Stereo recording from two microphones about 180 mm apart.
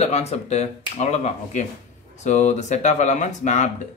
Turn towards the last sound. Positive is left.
turn(degrees=40)  # may be behind; listen again after turning